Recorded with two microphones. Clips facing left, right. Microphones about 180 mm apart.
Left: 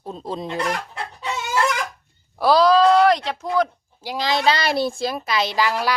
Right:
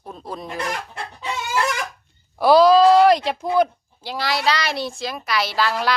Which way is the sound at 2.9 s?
10° right (ahead or behind).